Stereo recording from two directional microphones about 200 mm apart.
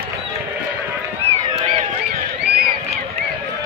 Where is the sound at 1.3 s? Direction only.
30° right (ahead or behind).